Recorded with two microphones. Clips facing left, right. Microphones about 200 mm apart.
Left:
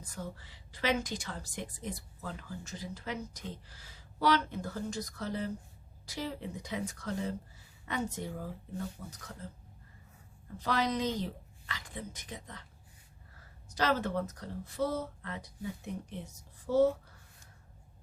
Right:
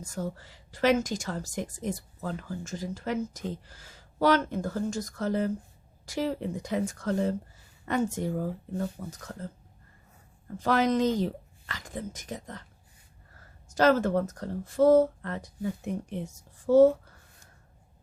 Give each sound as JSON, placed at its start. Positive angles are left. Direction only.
{"t": 0.0, "sound": "a woman's voice", "side_deg": -45}
{"t": 10.6, "sound": "speech", "side_deg": -50}
{"t": 13.7, "sound": "a woman's voice", "side_deg": -50}